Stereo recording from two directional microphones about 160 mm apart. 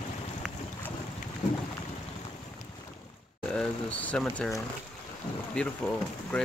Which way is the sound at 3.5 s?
5° left (ahead or behind).